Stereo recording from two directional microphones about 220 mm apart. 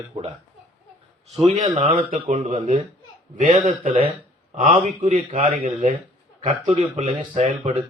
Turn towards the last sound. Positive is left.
turn(degrees=-30)  # may be behind; listen again after turning